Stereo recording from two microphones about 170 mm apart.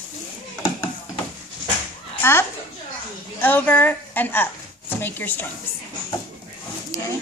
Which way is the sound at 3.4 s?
10° left (ahead or behind).